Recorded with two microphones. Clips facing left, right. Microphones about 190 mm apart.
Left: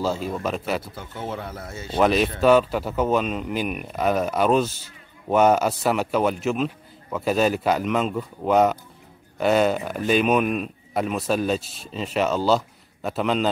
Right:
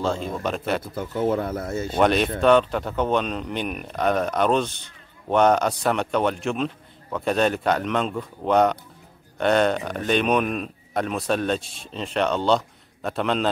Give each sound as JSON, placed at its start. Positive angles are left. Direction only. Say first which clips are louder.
{"t": 0.0, "sound": "speech", "louder": "even", "side_deg": 5}
{"t": 0.9, "sound": "speech", "louder": "right 9 dB", "side_deg": -50}
{"t": 2.0, "sound": "speech", "louder": "left 1 dB", "side_deg": 0}